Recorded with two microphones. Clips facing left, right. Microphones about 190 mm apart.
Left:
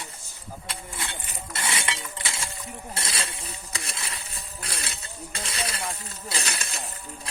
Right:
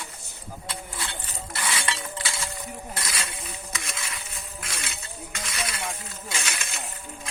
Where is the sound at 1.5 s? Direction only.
25° left (ahead or behind).